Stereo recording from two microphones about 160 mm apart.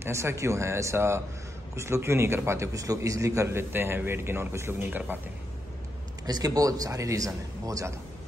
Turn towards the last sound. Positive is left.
turn(degrees=-20)  # may be behind; listen again after turning